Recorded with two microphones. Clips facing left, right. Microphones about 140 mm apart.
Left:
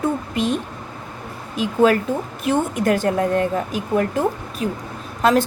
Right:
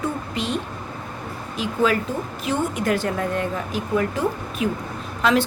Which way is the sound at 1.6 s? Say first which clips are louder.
Left 5 dB; 45° left (ahead or behind).